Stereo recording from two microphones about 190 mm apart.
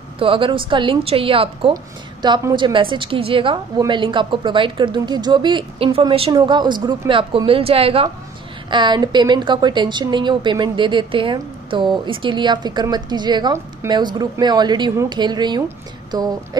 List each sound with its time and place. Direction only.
0.2 s a woman's voice: 25° right (ahead or behind)